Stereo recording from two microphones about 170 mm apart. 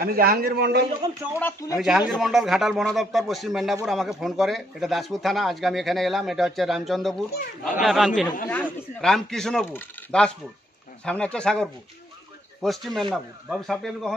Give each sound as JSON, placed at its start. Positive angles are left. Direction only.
{"t": 0.0, "sound": "a man's voice", "side_deg": -60}
{"t": 1.4, "sound": "speech", "side_deg": 15}
{"t": 1.8, "sound": "speech", "side_deg": 0}